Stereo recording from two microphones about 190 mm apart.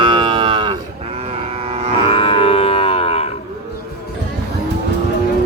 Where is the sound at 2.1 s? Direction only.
30° left (ahead or behind).